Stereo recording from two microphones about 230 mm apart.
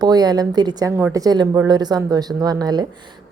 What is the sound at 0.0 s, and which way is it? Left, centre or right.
A woman's voice, centre.